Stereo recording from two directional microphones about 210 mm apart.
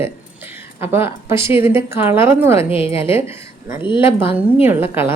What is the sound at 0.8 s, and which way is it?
Speech, 10° right (ahead or behind).